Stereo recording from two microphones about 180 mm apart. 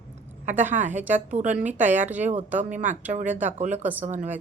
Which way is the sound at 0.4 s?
40° right (ahead or behind).